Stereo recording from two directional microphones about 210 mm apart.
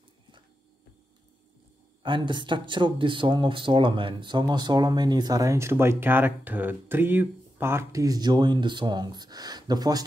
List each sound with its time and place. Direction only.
2.0 s speech: 25° right (ahead or behind)